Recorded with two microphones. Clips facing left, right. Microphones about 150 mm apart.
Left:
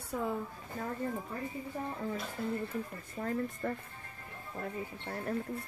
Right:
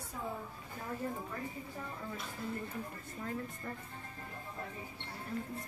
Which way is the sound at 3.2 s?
50° left (ahead or behind).